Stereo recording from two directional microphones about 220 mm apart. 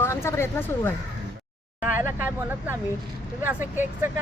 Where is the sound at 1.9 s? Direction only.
10° right (ahead or behind).